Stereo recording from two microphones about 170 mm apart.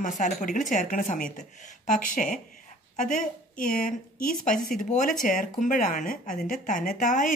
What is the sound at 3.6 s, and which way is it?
Speech, 55° left (ahead or behind).